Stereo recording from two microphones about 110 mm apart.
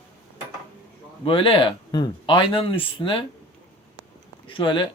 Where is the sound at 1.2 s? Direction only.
55° left (ahead or behind).